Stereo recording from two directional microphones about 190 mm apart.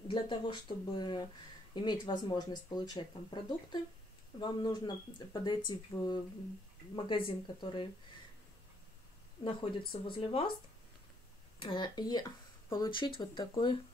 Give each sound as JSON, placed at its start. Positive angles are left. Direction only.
{"t": 0.1, "sound": "speech", "side_deg": 25}
{"t": 9.4, "sound": "speech", "side_deg": 25}
{"t": 11.6, "sound": "speech", "side_deg": 25}